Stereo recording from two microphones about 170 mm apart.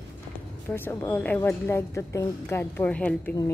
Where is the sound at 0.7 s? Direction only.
15° left (ahead or behind).